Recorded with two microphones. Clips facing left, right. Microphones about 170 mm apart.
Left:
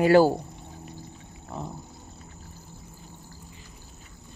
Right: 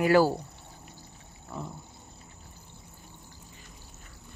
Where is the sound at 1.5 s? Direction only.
25° left (ahead or behind).